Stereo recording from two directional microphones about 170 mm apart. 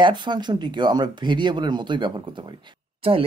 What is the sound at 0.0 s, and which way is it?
Speech, 25° right (ahead or behind).